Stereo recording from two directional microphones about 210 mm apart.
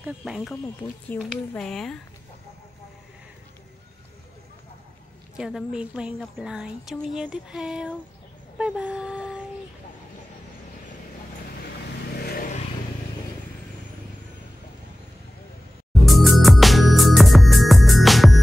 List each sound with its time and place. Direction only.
0.0 s speech: 5° right (ahead or behind)
5.4 s speech: 5° right (ahead or behind)
8.5 s a sound: 5° right (ahead or behind)
12.2 s vehicle: 45° left (ahead or behind)
16.1 s music: centre (ahead or behind)